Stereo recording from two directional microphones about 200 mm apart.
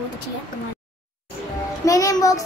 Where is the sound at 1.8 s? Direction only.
15° left (ahead or behind).